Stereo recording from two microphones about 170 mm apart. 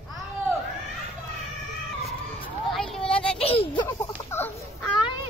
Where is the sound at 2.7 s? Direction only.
5° left (ahead or behind).